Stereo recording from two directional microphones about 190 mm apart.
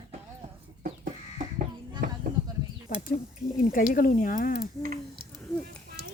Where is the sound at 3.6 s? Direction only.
45° left (ahead or behind).